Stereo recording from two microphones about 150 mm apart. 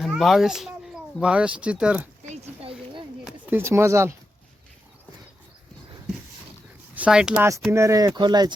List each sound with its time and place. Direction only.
0.0 s speech: centre (ahead or behind)
2.3 s a sound: 40° right (ahead or behind)
3.2 s speech: 15° right (ahead or behind)
6.9 s speech: 5° right (ahead or behind)
7.7 s speech: 20° right (ahead or behind)